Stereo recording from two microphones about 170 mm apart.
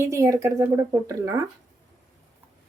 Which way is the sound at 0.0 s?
15° right (ahead or behind).